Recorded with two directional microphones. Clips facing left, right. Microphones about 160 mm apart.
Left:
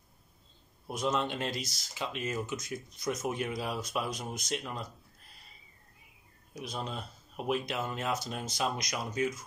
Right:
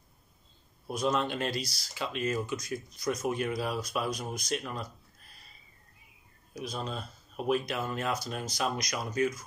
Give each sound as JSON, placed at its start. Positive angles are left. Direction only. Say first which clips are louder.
{"t": 0.8, "sound": "speech", "louder": "right 2 dB", "side_deg": 20}
{"t": 6.5, "sound": "speech", "louder": "right 2 dB", "side_deg": 25}